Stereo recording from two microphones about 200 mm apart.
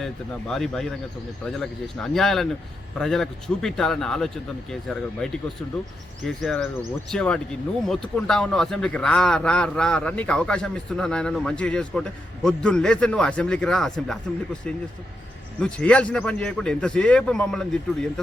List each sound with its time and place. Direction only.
0.0 s a man's voice: centre (ahead or behind)
15.6 s a man's voice: 5° left (ahead or behind)